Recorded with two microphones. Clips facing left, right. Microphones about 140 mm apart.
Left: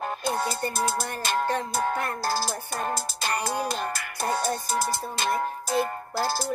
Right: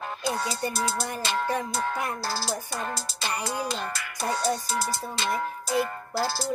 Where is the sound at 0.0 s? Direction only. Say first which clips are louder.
Left 2 dB; 50° left (ahead or behind).